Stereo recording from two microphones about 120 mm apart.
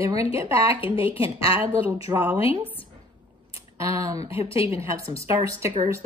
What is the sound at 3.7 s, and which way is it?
A woman's voice, 25° right (ahead or behind).